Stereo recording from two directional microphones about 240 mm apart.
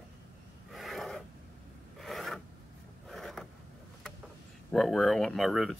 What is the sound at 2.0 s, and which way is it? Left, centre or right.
Filing, centre.